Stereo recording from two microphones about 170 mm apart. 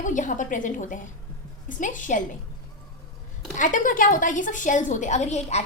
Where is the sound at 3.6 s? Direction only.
50° left (ahead or behind).